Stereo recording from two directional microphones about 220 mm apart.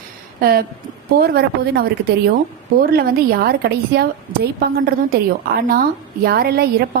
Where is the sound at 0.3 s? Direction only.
45° right (ahead or behind).